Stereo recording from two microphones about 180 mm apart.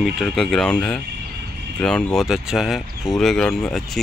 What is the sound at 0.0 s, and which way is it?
Speech, centre (ahead or behind).